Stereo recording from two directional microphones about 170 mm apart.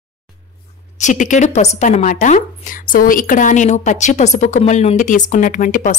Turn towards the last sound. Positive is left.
turn(degrees=50)  # may be behind; listen again after turning